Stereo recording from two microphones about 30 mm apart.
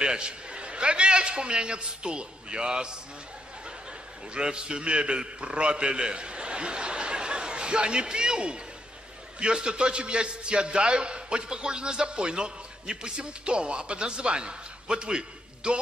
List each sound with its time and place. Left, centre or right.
0.0 s a man's voice: right
4.3 s a man's voice: right